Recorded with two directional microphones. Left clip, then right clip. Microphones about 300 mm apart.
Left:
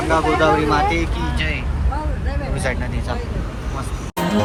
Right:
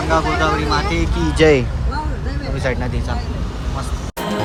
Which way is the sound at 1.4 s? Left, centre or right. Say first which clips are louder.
Right 14 dB; right.